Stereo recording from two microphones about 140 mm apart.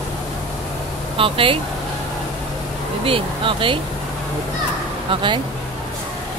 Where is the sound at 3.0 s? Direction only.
40° right (ahead or behind).